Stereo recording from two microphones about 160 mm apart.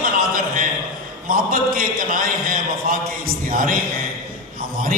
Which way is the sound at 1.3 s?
65° right (ahead or behind).